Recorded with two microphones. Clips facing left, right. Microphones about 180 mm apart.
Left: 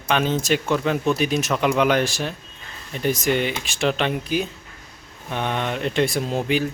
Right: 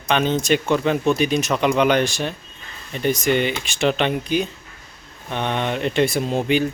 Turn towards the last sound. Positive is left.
turn(degrees=0)  # may be behind; listen again after turning